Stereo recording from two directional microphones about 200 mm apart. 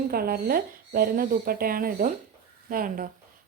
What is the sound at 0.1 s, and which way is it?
Speech, 50° right (ahead or behind).